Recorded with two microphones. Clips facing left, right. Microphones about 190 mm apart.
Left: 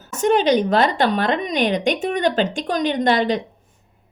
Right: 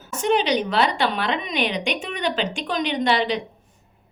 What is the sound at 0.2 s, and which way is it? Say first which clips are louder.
Speech: left 4 dB; 45° left (ahead or behind).